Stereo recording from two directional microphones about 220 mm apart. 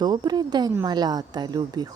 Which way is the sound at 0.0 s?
20° right (ahead or behind).